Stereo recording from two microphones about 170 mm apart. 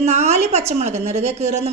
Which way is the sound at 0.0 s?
40° right (ahead or behind).